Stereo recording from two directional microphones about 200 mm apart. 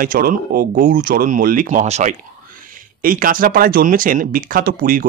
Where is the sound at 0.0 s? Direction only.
45° right (ahead or behind).